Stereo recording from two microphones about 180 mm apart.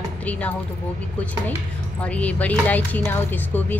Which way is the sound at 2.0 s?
5° left (ahead or behind).